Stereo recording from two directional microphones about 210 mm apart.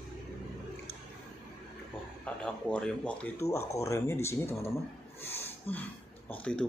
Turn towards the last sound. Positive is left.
turn(degrees=5)  # may be behind; listen again after turning